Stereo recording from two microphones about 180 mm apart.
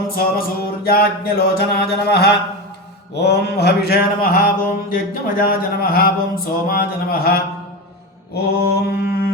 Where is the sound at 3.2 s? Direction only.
65° left (ahead or behind).